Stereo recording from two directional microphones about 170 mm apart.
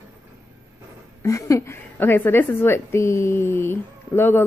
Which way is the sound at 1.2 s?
20° left (ahead or behind).